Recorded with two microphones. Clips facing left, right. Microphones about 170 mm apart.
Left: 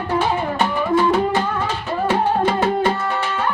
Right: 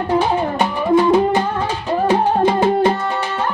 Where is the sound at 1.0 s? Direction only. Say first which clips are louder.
Right 4 dB; 15° right (ahead or behind).